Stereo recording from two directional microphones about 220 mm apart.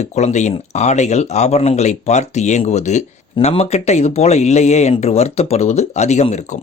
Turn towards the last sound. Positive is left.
turn(degrees=30)  # may be behind; listen again after turning